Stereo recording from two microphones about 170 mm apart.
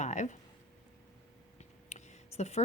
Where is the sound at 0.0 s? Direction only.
45° left (ahead or behind).